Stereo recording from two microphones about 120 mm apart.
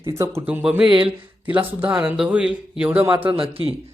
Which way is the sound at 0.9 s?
45° right (ahead or behind).